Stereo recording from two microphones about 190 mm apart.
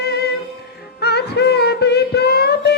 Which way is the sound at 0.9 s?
60° left (ahead or behind).